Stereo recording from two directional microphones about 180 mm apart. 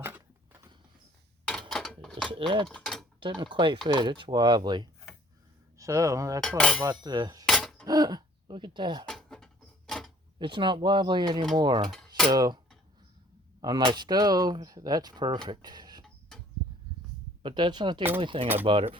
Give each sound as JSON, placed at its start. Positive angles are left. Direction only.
{"t": 1.7, "sound": "a sound", "side_deg": 0}
{"t": 2.6, "sound": "mechanisms", "side_deg": 0}
{"t": 3.2, "sound": "speech", "side_deg": -25}
{"t": 6.6, "sound": "cutlery", "side_deg": 5}
{"t": 7.0, "sound": "speech", "side_deg": -20}
{"t": 7.4, "sound": "a sound", "side_deg": 0}
{"t": 7.9, "sound": "speech", "side_deg": -20}
{"t": 9.0, "sound": "a sound", "side_deg": 0}
{"t": 10.3, "sound": "speech", "side_deg": -25}
{"t": 11.9, "sound": "cutlery", "side_deg": 0}
{"t": 12.3, "sound": "speech", "side_deg": -20}
{"t": 13.6, "sound": "speech", "side_deg": -25}
{"t": 17.4, "sound": "speech", "side_deg": -25}
{"t": 18.6, "sound": "cutlery", "side_deg": -30}